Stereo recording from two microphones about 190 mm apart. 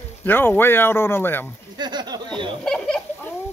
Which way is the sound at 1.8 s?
20° right (ahead or behind).